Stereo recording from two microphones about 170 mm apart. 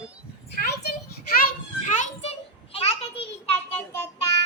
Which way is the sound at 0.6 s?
70° left (ahead or behind).